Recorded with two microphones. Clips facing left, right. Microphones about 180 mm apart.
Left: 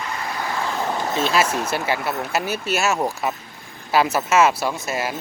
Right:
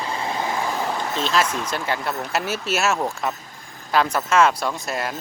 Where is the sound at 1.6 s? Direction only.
5° left (ahead or behind).